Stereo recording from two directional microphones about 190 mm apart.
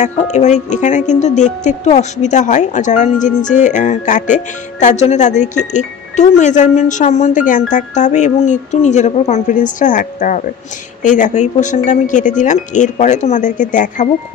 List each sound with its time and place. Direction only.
0.0 s speech: 40° left (ahead or behind)